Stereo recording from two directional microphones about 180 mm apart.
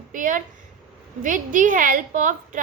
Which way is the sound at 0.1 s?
45° right (ahead or behind).